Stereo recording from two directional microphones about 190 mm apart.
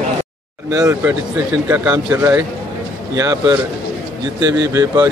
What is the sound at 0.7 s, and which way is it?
Speech, 20° right (ahead or behind).